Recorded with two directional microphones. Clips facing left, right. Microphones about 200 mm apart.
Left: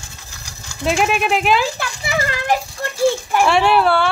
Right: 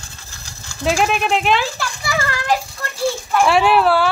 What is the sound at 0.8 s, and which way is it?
Speech, centre (ahead or behind).